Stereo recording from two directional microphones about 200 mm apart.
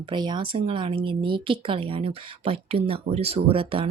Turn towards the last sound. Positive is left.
turn(degrees=-25)  # may be behind; listen again after turning